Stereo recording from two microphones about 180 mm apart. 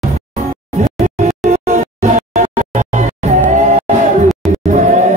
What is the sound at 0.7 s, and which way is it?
Music, 40° right (ahead or behind).